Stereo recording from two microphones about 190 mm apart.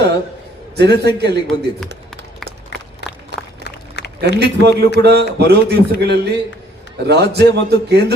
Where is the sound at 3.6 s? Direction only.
60° left (ahead or behind).